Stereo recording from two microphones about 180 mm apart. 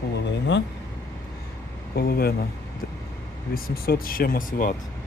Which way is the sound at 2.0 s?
60° left (ahead or behind).